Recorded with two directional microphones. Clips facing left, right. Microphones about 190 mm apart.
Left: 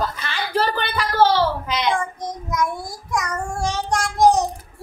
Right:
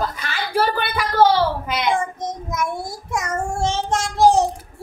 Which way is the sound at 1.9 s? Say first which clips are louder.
Right 2 dB; 25° right (ahead or behind).